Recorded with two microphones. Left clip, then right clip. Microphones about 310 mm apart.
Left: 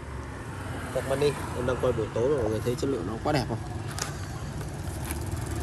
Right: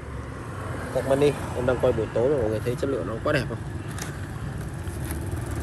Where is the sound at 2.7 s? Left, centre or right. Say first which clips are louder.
Right 2 dB; centre.